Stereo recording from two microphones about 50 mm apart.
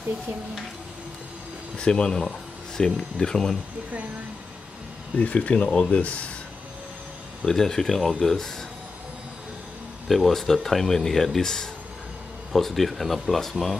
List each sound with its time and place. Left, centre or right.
1.8 s speech: centre
5.1 s speech: left
7.4 s speech: centre
10.0 s speech: centre